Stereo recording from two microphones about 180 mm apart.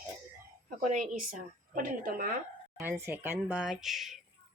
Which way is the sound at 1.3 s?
50° right (ahead or behind).